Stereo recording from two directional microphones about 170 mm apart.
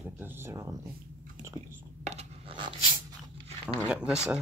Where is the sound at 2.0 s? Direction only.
40° right (ahead or behind).